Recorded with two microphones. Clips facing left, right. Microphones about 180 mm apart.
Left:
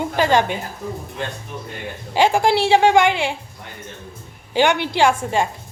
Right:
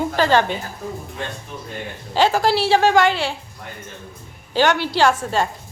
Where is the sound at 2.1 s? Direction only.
15° left (ahead or behind).